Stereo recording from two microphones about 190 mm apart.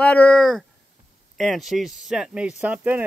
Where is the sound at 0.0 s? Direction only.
5° left (ahead or behind).